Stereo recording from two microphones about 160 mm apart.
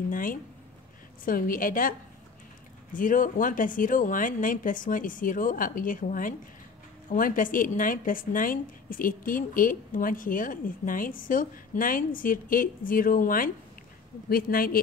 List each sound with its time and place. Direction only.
0.1 s a woman's voice: 60° left (ahead or behind)